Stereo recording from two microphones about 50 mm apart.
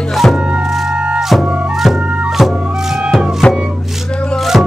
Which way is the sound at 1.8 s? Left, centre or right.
Centre.